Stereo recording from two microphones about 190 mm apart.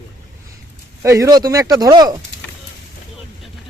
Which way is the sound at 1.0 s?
15° right (ahead or behind).